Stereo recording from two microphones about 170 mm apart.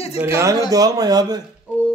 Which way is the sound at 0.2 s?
15° right (ahead or behind).